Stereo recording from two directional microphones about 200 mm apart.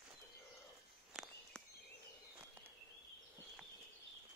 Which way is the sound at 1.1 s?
Centre (ahead or behind).